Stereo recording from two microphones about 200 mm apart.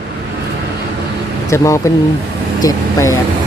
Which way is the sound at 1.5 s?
15° left (ahead or behind).